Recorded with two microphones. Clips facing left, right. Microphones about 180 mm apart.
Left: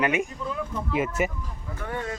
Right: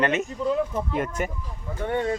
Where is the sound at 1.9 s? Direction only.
25° right (ahead or behind).